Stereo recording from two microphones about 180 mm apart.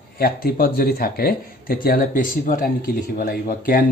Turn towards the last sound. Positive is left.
turn(degrees=55)  # may be behind; listen again after turning